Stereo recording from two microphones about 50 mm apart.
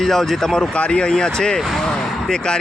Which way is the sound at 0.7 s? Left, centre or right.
Left.